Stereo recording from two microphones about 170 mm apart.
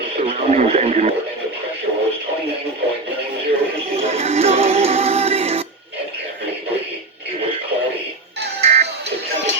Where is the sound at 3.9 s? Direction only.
35° right (ahead or behind).